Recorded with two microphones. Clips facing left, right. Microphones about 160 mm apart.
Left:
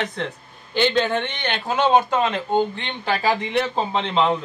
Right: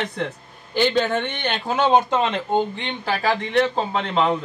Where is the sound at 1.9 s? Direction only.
5° left (ahead or behind).